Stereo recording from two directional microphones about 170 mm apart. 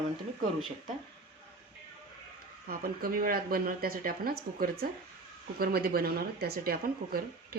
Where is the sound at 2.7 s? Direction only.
60° right (ahead or behind).